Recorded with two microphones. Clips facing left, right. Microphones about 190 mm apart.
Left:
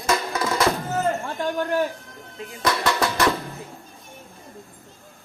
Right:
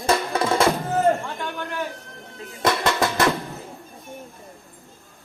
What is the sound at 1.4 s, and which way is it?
Speech, 40° left (ahead or behind).